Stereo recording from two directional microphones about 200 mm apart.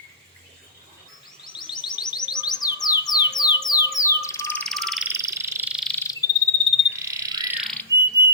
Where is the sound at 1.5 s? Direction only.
20° left (ahead or behind).